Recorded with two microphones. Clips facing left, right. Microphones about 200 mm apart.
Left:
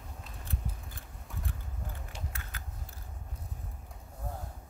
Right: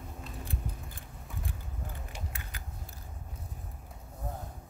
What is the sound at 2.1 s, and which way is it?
Typing, 15° right (ahead or behind).